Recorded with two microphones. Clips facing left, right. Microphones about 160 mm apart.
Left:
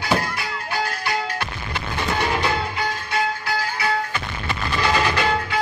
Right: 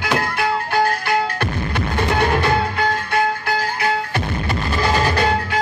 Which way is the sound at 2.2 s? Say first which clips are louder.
Right 5 dB; 55° right (ahead or behind).